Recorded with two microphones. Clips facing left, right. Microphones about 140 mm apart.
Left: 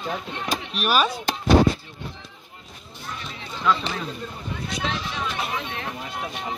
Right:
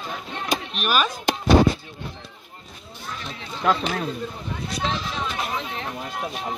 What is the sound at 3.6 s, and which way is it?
Speech, 55° right (ahead or behind).